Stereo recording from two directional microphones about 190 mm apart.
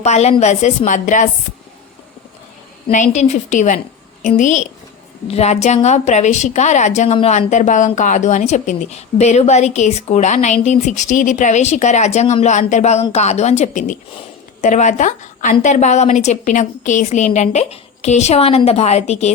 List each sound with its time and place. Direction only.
0.0 s a woman's voice: 35° left (ahead or behind)
2.9 s a woman's voice: 40° left (ahead or behind)